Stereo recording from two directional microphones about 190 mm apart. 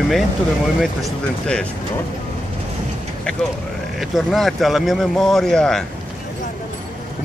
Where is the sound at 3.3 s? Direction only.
5° left (ahead or behind).